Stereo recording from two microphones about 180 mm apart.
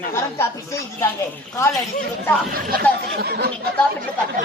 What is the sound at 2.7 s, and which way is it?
Speech, 60° right (ahead or behind).